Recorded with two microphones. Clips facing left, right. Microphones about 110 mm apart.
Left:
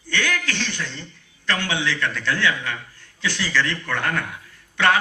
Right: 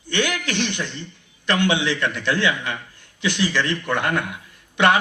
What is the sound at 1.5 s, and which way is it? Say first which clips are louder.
A man's voice: right 4 dB; 20° right (ahead or behind).